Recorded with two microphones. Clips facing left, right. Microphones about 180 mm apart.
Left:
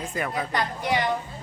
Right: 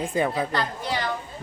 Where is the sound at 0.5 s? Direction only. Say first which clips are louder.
Left 2 dB; 20° left (ahead or behind).